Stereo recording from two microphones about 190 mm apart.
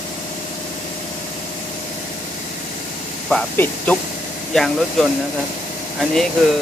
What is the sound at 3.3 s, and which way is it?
Speech, 5° left (ahead or behind).